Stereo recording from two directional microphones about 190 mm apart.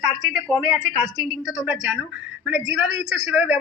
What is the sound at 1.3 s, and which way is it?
Speech, centre (ahead or behind).